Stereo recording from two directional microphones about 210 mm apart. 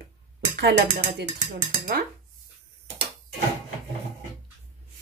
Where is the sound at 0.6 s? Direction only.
55° right (ahead or behind).